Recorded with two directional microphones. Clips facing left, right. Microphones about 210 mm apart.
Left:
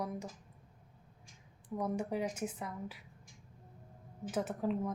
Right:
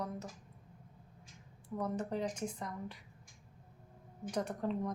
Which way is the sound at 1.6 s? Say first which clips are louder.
Left 1 dB; 10° left (ahead or behind).